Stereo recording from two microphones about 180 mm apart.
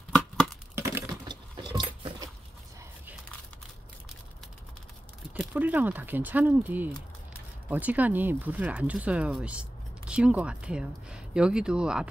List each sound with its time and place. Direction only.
0.7 s chink: 15° right (ahead or behind)
1.3 s a sound: 25° right (ahead or behind)
5.3 s speech: 10° right (ahead or behind)